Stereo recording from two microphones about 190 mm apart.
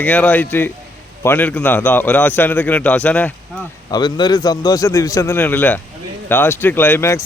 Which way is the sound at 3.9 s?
20° left (ahead or behind).